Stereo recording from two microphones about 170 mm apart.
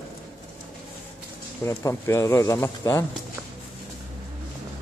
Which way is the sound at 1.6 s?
15° left (ahead or behind).